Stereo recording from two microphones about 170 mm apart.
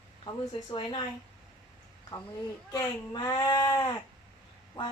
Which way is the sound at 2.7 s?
25° left (ahead or behind).